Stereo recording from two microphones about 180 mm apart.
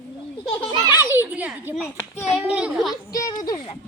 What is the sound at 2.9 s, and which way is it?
Speech, 20° left (ahead or behind).